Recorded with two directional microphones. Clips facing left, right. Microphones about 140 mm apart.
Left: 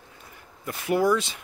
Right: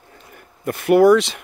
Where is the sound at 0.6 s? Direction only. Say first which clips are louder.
Right 10 dB; 60° right (ahead or behind); by 1.3 s 75° right (ahead or behind).